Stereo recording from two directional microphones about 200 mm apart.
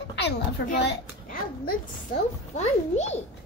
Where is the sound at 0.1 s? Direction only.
60° left (ahead or behind).